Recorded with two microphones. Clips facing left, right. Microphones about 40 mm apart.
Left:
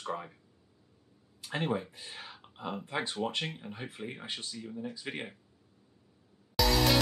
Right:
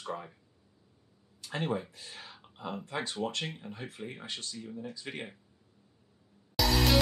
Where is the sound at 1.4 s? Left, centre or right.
Centre.